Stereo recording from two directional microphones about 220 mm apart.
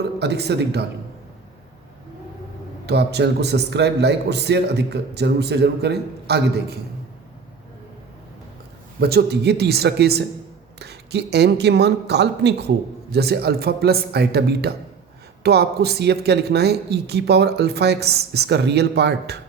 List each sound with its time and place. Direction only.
0.2 s speech: 50° right (ahead or behind)
2.8 s speech: 50° right (ahead or behind)
9.0 s speech: 50° right (ahead or behind)